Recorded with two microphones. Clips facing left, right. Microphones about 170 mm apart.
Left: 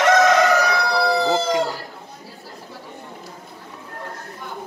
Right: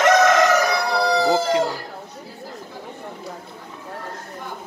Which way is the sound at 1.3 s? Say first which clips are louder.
Right 1 dB; centre (ahead or behind).